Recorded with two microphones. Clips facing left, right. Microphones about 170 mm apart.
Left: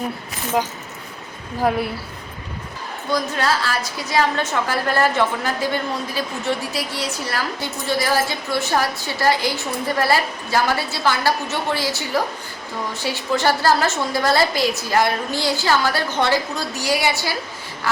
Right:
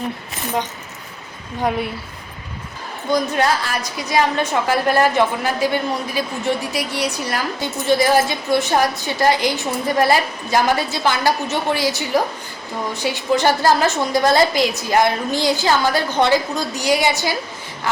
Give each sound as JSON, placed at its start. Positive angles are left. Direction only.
{"t": 3.1, "sound": "a woman's voice", "side_deg": -20}